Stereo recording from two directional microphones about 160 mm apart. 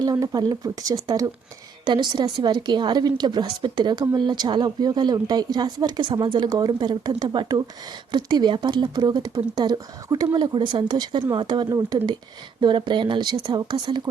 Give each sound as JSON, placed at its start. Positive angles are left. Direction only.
{"t": 0.0, "sound": "a woman's voice", "side_deg": -25}